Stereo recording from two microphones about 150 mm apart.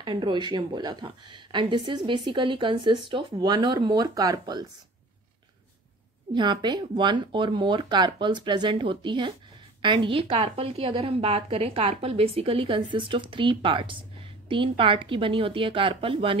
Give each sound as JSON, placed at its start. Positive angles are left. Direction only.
{"t": 0.0, "sound": "a woman's voice", "side_deg": -30}
{"t": 6.3, "sound": "a woman's voice", "side_deg": -30}